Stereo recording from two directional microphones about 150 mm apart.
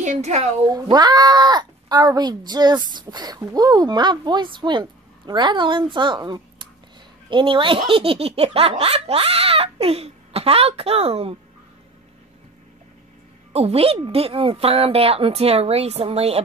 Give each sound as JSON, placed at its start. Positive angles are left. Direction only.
{"t": 0.0, "sound": "a woman's voice", "side_deg": -50}
{"t": 0.7, "sound": "speech", "side_deg": -25}
{"t": 7.2, "sound": "laughter", "side_deg": -35}
{"t": 13.5, "sound": "laughter", "side_deg": -40}